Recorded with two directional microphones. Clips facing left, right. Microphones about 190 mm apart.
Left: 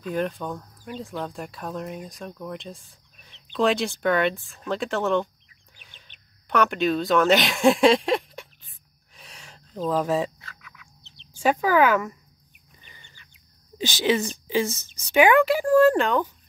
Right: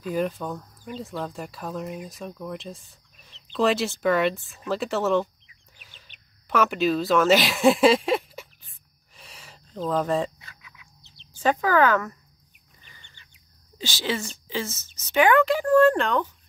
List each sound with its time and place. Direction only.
0.0 s speech: centre (ahead or behind)
5.8 s chicken: 5° right (ahead or behind)
6.5 s speech: centre (ahead or behind)
9.1 s a sound: centre (ahead or behind)
10.4 s a sound: 20° right (ahead or behind)
11.1 s speech: 10° left (ahead or behind)
13.7 s speech: 15° left (ahead or behind)